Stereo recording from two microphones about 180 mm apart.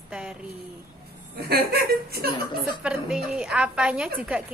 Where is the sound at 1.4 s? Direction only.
60° right (ahead or behind).